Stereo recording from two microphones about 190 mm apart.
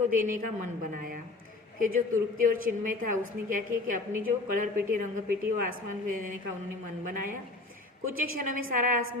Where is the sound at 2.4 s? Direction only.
45° right (ahead or behind).